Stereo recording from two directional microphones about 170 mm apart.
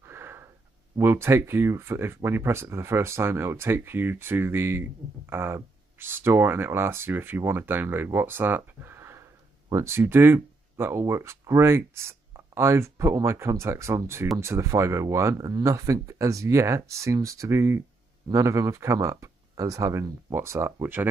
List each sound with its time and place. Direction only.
0.0 s wheeze: 15° right (ahead or behind)
0.9 s speech: 15° right (ahead or behind)